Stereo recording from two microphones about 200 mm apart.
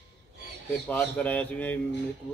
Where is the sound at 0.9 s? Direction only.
10° left (ahead or behind).